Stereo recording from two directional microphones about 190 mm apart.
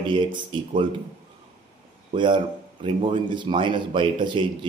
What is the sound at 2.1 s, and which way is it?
Speech, 25° right (ahead or behind).